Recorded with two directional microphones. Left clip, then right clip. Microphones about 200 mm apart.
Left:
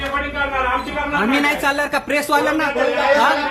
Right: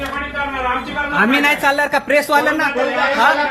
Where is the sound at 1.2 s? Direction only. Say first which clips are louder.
Right 4 dB; 15° right (ahead or behind).